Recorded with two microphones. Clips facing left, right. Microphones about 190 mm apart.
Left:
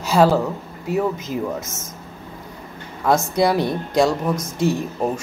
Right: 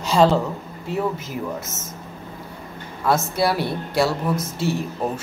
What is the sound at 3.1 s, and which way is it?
Speech, 20° left (ahead or behind).